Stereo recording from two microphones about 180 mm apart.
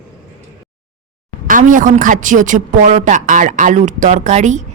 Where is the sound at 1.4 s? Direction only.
45° right (ahead or behind).